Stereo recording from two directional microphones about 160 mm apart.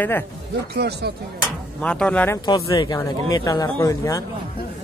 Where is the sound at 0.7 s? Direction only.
90° right.